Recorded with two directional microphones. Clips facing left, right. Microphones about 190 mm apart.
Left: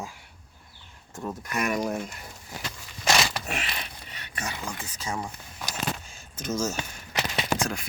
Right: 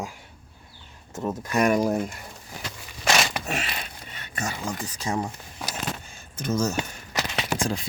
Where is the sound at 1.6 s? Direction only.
30° right (ahead or behind).